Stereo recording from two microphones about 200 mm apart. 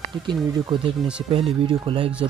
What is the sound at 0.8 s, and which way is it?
Speech, 30° right (ahead or behind).